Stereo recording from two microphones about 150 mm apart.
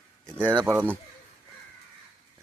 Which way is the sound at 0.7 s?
15° right (ahead or behind).